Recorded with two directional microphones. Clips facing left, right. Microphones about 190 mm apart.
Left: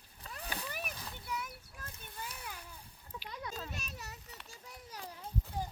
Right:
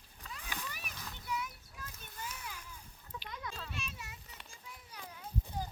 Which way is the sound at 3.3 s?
35° left (ahead or behind).